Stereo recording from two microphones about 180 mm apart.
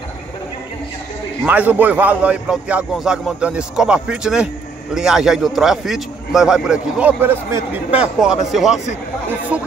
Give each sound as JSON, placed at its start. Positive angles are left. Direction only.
{"t": 1.4, "sound": "a man's voice", "side_deg": -10}